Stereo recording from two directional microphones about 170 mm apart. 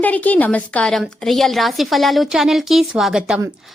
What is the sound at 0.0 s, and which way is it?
A woman's voice, 10° left (ahead or behind).